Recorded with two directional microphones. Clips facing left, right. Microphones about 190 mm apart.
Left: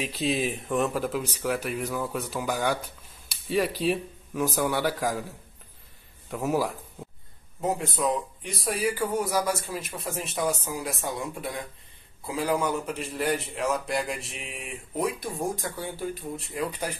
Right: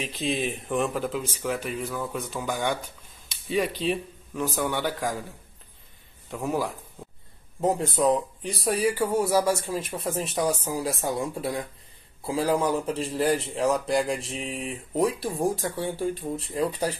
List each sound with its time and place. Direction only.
0.0 s speech: 5° left (ahead or behind)
6.3 s speech: 5° left (ahead or behind)
7.6 s a man's voice: 35° right (ahead or behind)